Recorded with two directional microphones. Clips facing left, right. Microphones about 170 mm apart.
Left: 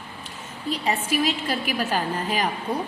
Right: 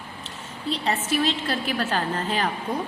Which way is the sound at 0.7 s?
10° left (ahead or behind).